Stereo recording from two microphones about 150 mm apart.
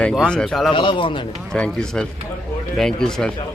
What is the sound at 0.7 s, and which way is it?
Speech, 35° left (ahead or behind).